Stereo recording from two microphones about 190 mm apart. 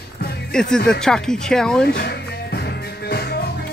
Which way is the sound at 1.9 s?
60° left (ahead or behind).